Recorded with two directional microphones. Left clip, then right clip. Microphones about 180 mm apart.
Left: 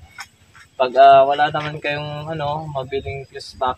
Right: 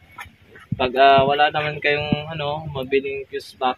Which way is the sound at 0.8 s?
45° left (ahead or behind).